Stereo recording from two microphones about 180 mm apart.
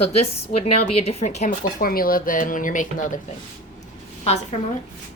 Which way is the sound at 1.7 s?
55° left (ahead or behind).